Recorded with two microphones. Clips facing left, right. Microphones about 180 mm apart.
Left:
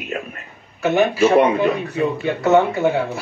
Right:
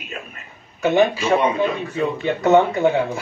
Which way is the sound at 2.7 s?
15° right (ahead or behind).